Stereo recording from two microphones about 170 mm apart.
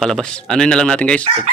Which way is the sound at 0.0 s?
5° left (ahead or behind).